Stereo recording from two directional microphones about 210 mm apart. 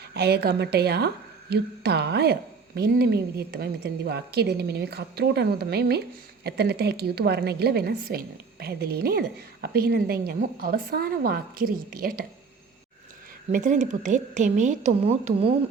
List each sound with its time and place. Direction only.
0.1 s a woman's voice: 50° right (ahead or behind)
13.5 s a woman's voice: 35° right (ahead or behind)